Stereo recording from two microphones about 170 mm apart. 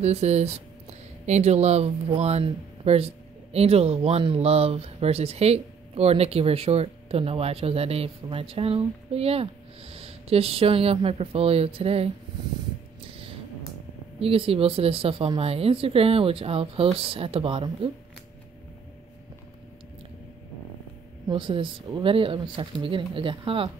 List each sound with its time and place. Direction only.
0.0 s speech: 40° right (ahead or behind)
14.2 s speech: 35° right (ahead or behind)
21.3 s speech: 30° right (ahead or behind)